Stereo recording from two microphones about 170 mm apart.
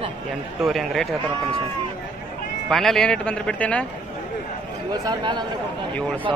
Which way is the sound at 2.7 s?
Centre (ahead or behind).